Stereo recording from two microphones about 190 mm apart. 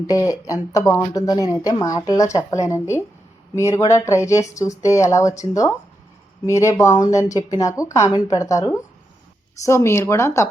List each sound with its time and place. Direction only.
0.1 s speech: 20° left (ahead or behind)